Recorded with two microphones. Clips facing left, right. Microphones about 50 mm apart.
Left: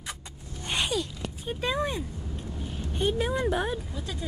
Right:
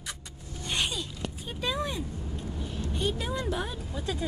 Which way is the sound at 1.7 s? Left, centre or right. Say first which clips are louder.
Left 2 dB; left.